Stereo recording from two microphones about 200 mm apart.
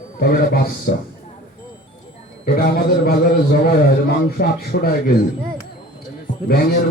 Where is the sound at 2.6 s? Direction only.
45° left (ahead or behind).